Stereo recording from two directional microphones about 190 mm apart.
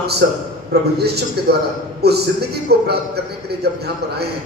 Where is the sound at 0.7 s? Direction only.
60° right (ahead or behind).